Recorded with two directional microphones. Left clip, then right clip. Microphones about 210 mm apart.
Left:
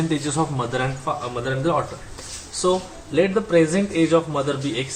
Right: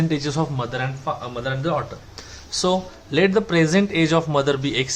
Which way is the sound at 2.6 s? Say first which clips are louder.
Even; 45° right (ahead or behind).